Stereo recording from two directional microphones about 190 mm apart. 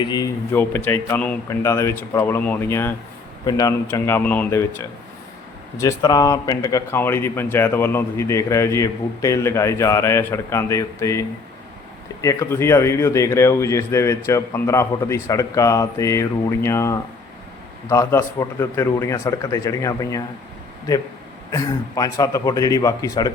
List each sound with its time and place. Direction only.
0.0 s speech: 20° left (ahead or behind)
21.5 s speech: 20° left (ahead or behind)